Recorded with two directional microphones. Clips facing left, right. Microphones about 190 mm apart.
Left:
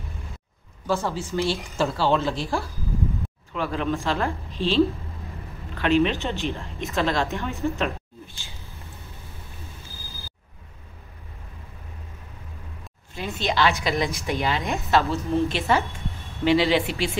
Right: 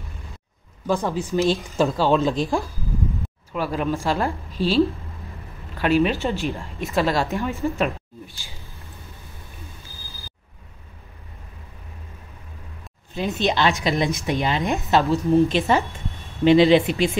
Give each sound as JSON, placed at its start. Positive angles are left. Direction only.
{"t": 0.8, "sound": "a woman's voice", "side_deg": -15}
{"t": 13.1, "sound": "a woman's voice", "side_deg": -20}